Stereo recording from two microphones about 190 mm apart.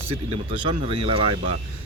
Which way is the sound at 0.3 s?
35° right (ahead or behind).